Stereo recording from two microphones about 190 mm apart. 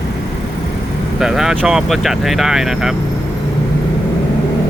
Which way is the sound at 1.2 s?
Centre (ahead or behind).